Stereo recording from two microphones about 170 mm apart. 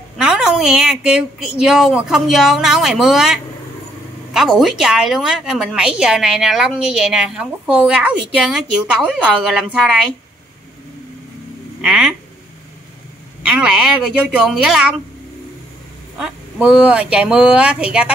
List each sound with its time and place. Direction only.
0.2 s a woman's voice: 5° right (ahead or behind)
11.8 s a woman's voice: 5° right (ahead or behind)
13.4 s a woman's voice: 5° right (ahead or behind)
16.2 s a woman's voice: 5° right (ahead or behind)